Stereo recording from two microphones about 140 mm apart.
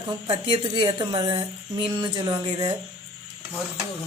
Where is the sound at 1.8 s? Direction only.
25° right (ahead or behind).